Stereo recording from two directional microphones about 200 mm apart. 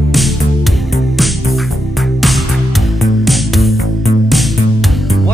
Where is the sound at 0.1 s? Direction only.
Centre (ahead or behind).